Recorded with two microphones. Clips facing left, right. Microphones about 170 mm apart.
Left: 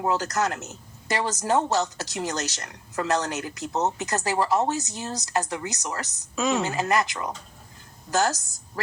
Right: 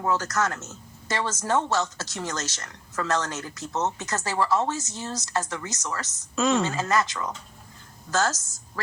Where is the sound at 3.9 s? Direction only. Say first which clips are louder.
Left 2 dB; 20° left (ahead or behind).